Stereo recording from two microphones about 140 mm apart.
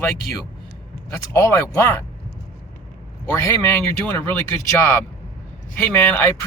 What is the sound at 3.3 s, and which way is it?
Speech, 15° left (ahead or behind).